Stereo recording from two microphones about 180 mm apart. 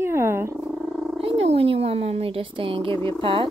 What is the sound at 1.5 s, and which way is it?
A woman's voice, 35° right (ahead or behind).